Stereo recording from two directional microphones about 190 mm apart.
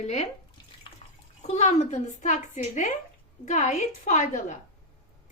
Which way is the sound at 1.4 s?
35° left (ahead or behind).